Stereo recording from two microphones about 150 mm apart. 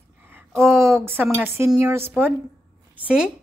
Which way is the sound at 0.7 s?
20° right (ahead or behind).